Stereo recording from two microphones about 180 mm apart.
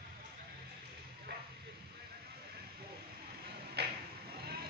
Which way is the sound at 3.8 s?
65° right (ahead or behind).